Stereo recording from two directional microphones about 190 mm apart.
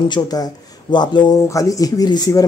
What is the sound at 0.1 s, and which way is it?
Speech, 20° left (ahead or behind).